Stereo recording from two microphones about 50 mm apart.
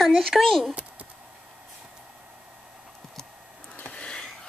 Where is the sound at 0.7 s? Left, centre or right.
Right.